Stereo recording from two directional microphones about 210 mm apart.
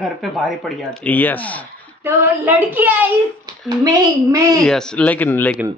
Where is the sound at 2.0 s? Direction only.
10° right (ahead or behind).